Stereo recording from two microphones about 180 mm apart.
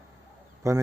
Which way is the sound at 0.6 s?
15° right (ahead or behind).